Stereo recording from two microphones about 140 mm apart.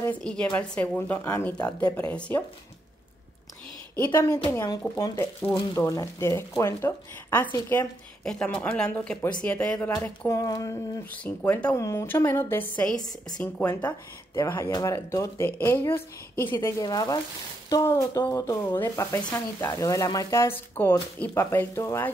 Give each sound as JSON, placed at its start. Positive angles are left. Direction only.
{"t": 0.0, "sound": "a woman's voice", "side_deg": 10}
{"t": 3.9, "sound": "a woman's voice", "side_deg": 15}
{"t": 8.2, "sound": "speech", "side_deg": 5}
{"t": 11.1, "sound": "speech", "side_deg": 10}
{"t": 14.5, "sound": "speech", "side_deg": 25}